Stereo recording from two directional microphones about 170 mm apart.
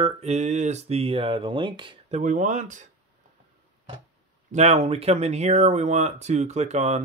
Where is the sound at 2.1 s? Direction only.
45° right (ahead or behind).